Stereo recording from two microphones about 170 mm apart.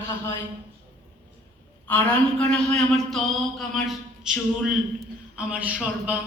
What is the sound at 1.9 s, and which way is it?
A man's voice, 5° left (ahead or behind).